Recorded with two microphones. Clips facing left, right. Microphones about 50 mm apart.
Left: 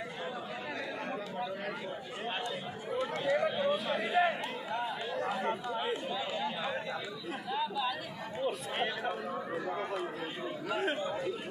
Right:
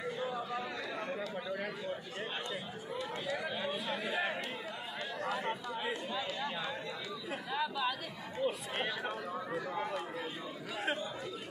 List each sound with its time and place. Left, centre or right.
3.0 s chatter: left
3.9 s a sound: left
5.2 s chatter: left